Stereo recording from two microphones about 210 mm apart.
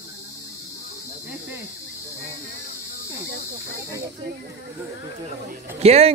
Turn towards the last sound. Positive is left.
turn(degrees=-30)  # may be behind; listen again after turning